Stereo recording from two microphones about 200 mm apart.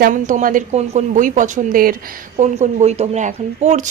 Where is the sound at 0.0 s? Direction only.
40° right (ahead or behind).